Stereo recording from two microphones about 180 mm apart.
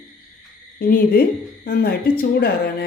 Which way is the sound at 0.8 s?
55° left (ahead or behind).